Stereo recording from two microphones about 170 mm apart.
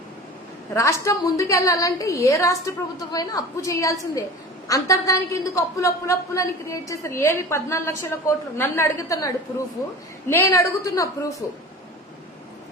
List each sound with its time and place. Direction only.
0.7 s a woman's voice: 15° left (ahead or behind)